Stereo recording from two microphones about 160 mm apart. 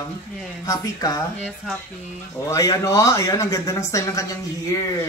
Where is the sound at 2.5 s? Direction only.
20° left (ahead or behind).